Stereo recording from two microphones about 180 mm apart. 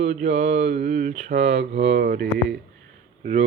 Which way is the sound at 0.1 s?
40° right (ahead or behind).